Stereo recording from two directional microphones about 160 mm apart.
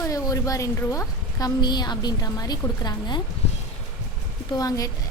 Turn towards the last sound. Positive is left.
turn(degrees=25)  # may be behind; listen again after turning